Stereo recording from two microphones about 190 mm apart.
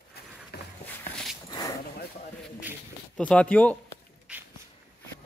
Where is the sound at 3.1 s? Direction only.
5° left (ahead or behind).